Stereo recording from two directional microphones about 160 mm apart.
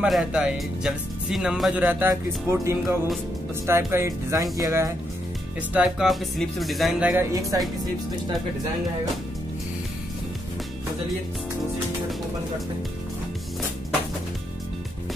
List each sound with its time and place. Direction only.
0.0 s speech: 5° right (ahead or behind); by 4.9 s 20° right (ahead or behind)
5.7 s speech: 5° right (ahead or behind)
7.5 s speech: 20° right (ahead or behind)